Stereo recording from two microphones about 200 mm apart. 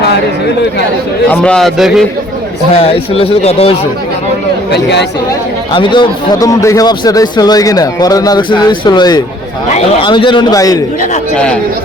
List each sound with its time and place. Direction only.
1.3 s a man's voice: 5° left (ahead or behind)
2.7 s a man's voice: 30° left (ahead or behind)
4.7 s speech: 60° left (ahead or behind)
5.7 s a man's voice: 25° left (ahead or behind)
9.6 s speech: 35° left (ahead or behind)
10.1 s a man's voice: 25° left (ahead or behind)